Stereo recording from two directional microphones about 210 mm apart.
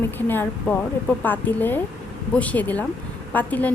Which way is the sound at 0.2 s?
10° left (ahead or behind).